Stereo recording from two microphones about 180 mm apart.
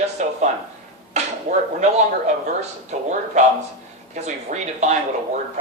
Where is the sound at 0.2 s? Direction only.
40° right (ahead or behind).